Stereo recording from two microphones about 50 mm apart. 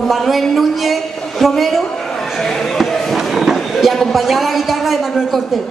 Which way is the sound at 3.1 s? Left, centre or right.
Centre.